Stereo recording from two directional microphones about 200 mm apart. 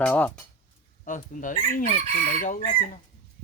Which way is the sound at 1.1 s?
40° left (ahead or behind).